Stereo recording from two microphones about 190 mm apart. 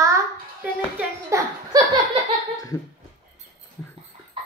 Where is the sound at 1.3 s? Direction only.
15° right (ahead or behind).